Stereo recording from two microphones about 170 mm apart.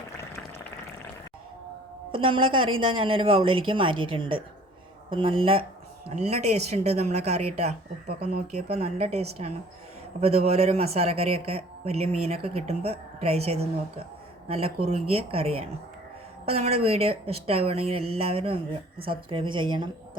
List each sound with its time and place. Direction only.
2.1 s speech: 30° right (ahead or behind)